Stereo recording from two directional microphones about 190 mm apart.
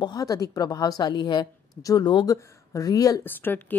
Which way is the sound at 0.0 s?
20° left (ahead or behind).